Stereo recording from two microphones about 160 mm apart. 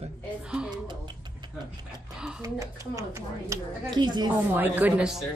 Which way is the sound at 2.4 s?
20° right (ahead or behind).